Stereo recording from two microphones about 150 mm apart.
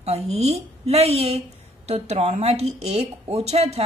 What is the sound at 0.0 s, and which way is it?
Speech, 45° right (ahead or behind).